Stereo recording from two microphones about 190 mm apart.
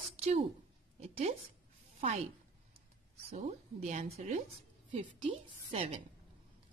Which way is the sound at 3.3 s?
35° right (ahead or behind).